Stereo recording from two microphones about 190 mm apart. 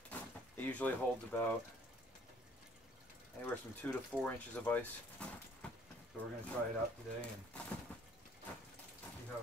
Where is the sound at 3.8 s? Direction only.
10° left (ahead or behind).